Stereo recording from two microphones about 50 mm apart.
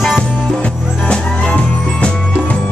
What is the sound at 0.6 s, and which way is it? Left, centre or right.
Music, left.